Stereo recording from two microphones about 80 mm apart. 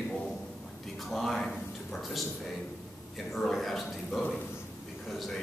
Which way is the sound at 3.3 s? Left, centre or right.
Centre.